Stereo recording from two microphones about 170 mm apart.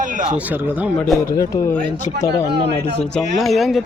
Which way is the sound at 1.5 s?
15° left (ahead or behind).